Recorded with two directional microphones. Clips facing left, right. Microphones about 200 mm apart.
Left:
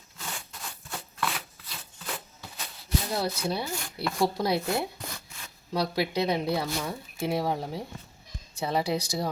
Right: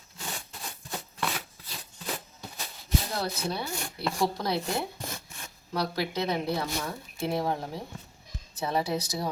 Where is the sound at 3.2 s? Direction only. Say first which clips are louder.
Left 2 dB; 10° left (ahead or behind).